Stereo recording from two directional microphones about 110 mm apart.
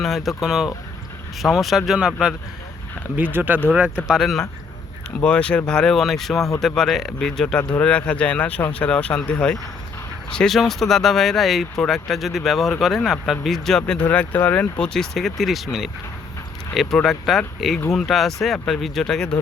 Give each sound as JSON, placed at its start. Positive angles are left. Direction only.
{"t": 0.0, "sound": "speech", "side_deg": 0}
{"t": 3.2, "sound": "speech", "side_deg": -15}